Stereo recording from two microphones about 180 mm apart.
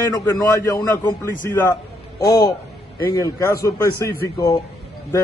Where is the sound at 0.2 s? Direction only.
15° left (ahead or behind).